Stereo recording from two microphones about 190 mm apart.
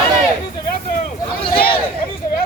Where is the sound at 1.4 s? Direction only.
30° left (ahead or behind).